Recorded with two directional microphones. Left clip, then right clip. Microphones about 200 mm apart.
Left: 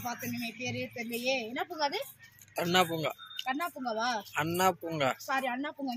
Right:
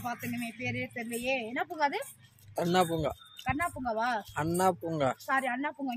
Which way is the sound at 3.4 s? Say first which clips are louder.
Right 2 dB; 5° right (ahead or behind).